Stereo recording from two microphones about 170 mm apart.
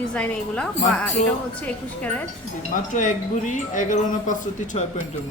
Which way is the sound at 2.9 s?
45° left (ahead or behind).